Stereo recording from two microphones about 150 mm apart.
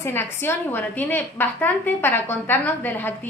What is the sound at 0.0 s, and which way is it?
A woman's voice, 15° left (ahead or behind).